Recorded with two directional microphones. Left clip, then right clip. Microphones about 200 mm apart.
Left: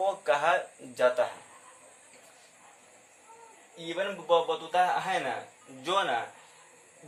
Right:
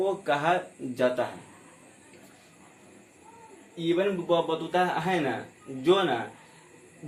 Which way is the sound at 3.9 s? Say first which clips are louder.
Even; 10° left (ahead or behind).